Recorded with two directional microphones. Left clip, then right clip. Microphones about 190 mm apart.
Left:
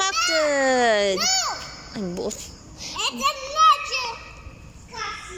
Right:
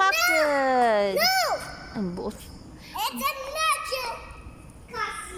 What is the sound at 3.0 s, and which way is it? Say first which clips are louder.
Children playing: left 4 dB; 30° right (ahead or behind).